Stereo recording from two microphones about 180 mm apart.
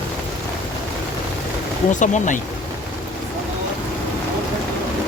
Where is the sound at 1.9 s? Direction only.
45° left (ahead or behind).